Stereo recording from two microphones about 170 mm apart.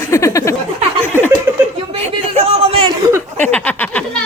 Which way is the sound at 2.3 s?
35° right (ahead or behind).